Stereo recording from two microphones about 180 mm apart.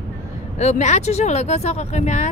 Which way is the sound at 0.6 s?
40° left (ahead or behind).